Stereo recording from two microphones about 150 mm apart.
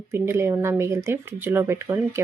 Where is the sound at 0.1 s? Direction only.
15° right (ahead or behind).